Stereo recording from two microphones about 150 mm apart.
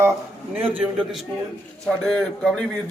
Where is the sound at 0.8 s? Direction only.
5° right (ahead or behind).